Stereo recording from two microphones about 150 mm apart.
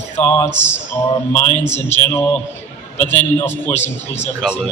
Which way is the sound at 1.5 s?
15° left (ahead or behind).